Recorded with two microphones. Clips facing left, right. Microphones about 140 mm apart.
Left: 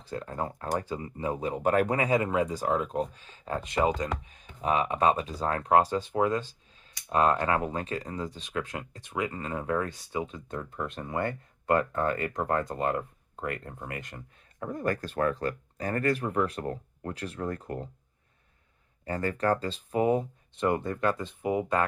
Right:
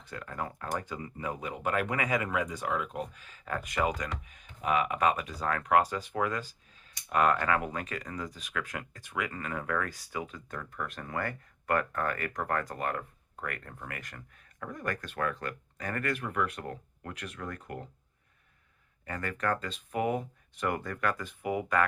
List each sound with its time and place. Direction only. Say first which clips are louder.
0.0 s speech: left 4 dB; 30° left (ahead or behind)
19.0 s speech: left 5 dB; 30° left (ahead or behind)